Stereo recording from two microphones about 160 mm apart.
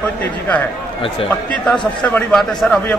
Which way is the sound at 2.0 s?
5° left (ahead or behind).